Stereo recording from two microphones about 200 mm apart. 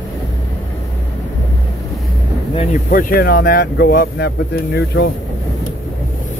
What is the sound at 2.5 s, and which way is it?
Speech, 40° left (ahead or behind).